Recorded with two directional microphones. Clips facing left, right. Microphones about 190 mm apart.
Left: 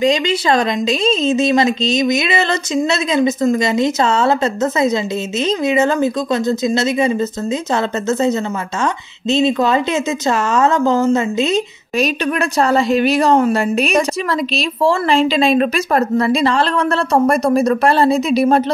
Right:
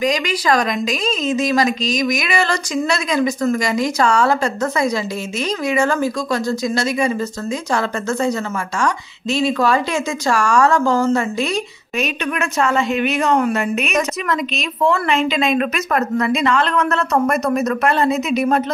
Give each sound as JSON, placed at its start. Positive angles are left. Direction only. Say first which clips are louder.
{"t": 0.0, "sound": "speech", "louder": "left 4 dB", "side_deg": 25}
{"t": 12.0, "sound": "a woman's voice", "louder": "left 4 dB", "side_deg": 35}